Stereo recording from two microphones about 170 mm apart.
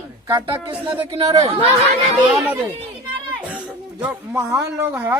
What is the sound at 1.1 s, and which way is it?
Speech, 35° right (ahead or behind).